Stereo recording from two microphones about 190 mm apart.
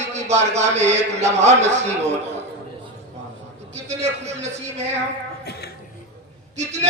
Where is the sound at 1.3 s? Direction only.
35° right (ahead or behind).